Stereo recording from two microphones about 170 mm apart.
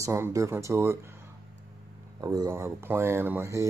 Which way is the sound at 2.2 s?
20° right (ahead or behind).